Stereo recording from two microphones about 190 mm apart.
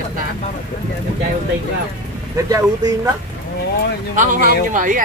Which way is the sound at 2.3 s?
20° right (ahead or behind).